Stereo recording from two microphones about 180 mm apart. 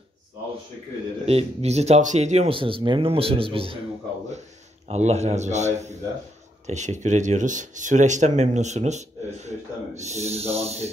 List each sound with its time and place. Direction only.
1.2 s speech: 35° right (ahead or behind)
4.8 s speech: 35° right (ahead or behind)